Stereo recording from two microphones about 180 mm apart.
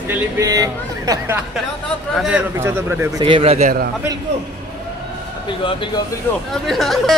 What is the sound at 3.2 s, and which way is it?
Speech, 30° right (ahead or behind).